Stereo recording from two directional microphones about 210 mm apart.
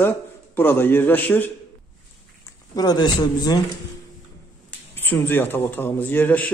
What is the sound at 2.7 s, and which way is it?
Speech, 20° left (ahead or behind).